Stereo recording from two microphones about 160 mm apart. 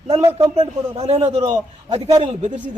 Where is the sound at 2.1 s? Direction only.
30° right (ahead or behind).